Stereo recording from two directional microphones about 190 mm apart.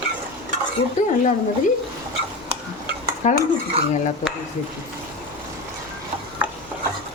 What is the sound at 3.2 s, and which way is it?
Speech, 40° left (ahead or behind).